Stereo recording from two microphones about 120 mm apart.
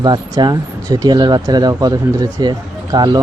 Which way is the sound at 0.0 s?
35° right (ahead or behind).